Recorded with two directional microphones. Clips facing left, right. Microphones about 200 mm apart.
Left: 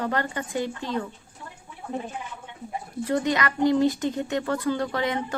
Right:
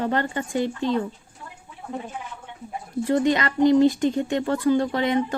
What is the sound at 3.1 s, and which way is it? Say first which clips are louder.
Speech: right 4 dB; 25° right (ahead or behind).